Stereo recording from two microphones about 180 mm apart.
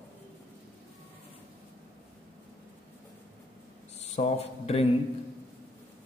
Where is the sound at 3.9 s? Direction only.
35° left (ahead or behind).